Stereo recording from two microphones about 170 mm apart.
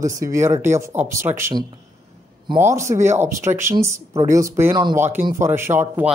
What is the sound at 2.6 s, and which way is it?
Speech, 15° right (ahead or behind).